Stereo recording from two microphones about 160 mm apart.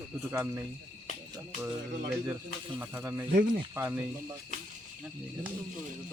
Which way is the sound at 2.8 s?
15° right (ahead or behind).